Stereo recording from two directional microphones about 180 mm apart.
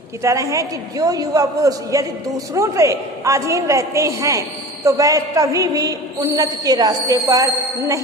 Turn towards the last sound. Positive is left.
turn(degrees=-20)  # may be behind; listen again after turning